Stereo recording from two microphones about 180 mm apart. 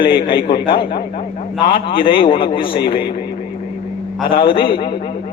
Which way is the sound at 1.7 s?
30° left (ahead or behind).